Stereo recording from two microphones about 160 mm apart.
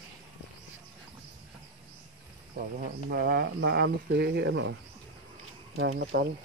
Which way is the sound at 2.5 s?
60° right (ahead or behind).